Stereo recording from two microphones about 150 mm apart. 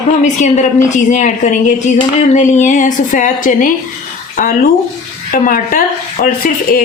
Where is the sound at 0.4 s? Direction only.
55° left (ahead or behind).